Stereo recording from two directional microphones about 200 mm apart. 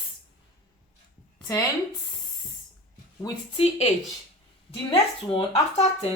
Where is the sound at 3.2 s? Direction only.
30° left (ahead or behind).